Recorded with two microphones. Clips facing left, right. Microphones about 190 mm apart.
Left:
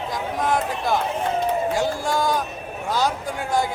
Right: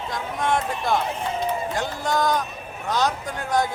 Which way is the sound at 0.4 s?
5° left (ahead or behind).